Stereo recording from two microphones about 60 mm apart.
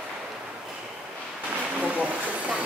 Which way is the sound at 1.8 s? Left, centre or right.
Right.